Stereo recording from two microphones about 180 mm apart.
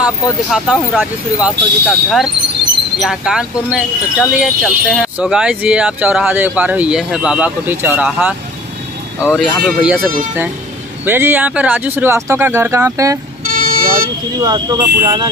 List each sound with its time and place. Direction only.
0.5 s speech: centre (ahead or behind)
13.6 s vehicle: 50° right (ahead or behind)
14.4 s speech: 20° right (ahead or behind)